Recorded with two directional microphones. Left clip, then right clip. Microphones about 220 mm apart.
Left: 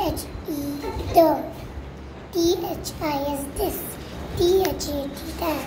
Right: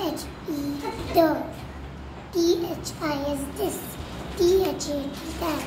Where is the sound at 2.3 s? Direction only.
25° right (ahead or behind).